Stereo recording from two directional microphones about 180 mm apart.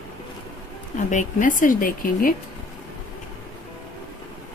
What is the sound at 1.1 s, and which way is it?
Speech, 45° left (ahead or behind).